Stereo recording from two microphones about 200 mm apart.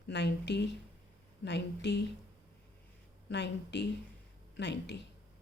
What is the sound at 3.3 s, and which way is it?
Speech, 60° left (ahead or behind).